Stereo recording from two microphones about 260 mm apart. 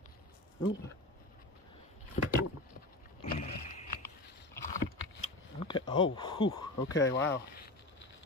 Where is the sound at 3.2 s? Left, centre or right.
Left.